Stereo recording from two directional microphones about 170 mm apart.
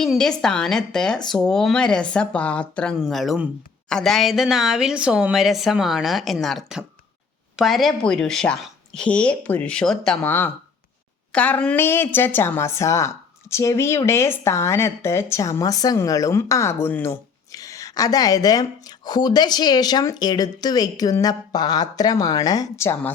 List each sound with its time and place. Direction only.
0.0 s a woman's voice: 5° left (ahead or behind)